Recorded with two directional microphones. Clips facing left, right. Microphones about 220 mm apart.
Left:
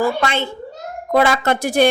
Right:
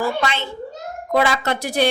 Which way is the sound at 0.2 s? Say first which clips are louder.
Left 3 dB; 50° left (ahead or behind).